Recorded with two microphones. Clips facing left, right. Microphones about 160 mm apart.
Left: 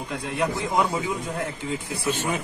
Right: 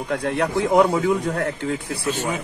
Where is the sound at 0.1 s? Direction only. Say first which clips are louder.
Right 5 dB; 65° right (ahead or behind).